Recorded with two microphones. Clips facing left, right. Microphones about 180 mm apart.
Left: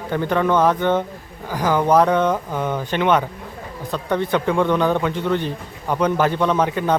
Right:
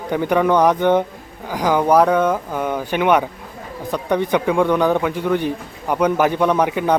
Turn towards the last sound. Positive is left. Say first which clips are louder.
# right 2 dB
turn(degrees=-10)  # may be behind; listen again after turning